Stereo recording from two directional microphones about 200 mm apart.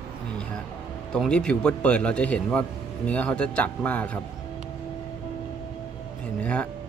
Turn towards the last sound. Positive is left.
turn(degrees=5)  # may be behind; listen again after turning